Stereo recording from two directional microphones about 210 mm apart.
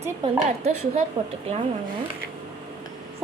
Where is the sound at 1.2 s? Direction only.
20° right (ahead or behind).